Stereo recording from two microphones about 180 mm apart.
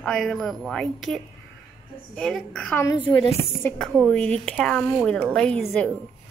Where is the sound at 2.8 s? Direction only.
25° left (ahead or behind).